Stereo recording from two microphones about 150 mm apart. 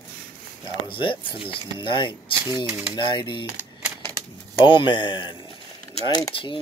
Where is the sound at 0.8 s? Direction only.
35° left (ahead or behind).